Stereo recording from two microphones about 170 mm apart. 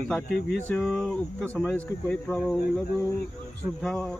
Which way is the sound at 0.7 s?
5° left (ahead or behind).